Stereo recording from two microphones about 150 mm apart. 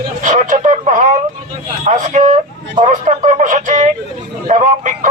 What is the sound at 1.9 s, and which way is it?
Vehicle, 50° right (ahead or behind).